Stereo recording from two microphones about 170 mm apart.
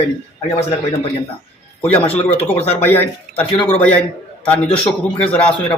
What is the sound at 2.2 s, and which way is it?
Speech, 35° left (ahead or behind).